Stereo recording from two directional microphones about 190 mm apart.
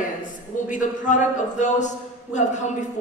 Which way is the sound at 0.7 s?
40° left (ahead or behind).